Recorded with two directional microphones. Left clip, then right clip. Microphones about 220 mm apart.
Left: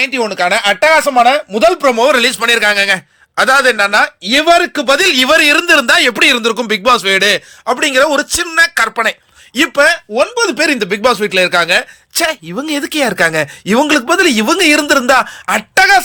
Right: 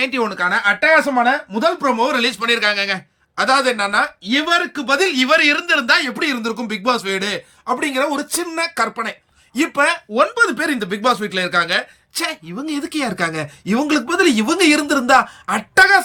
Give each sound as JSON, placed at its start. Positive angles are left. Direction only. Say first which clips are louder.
{"t": 0.0, "sound": "speech", "louder": "left 5 dB", "side_deg": -5}
{"t": 0.9, "sound": "speech", "louder": "left 6 dB", "side_deg": 15}
{"t": 10.6, "sound": "speech", "louder": "left 7 dB", "side_deg": 10}